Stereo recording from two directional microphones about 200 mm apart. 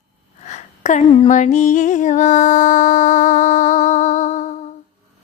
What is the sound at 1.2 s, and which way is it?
Music, 40° left (ahead or behind).